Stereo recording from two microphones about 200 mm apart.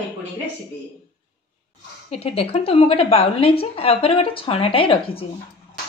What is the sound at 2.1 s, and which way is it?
A woman's voice, 30° left (ahead or behind).